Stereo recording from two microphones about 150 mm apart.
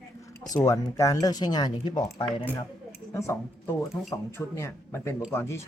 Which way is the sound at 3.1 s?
20° left (ahead or behind).